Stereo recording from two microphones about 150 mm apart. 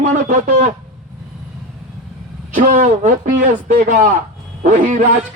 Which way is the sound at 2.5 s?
60° right (ahead or behind).